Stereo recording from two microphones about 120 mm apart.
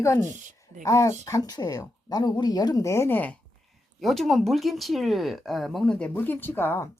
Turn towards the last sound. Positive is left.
turn(degrees=20)  # may be behind; listen again after turning